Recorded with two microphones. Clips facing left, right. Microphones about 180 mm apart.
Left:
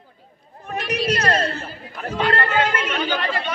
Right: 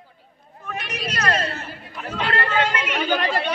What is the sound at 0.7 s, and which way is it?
Speech, 35° left (ahead or behind).